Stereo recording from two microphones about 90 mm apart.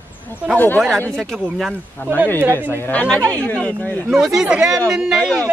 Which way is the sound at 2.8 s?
15° left (ahead or behind).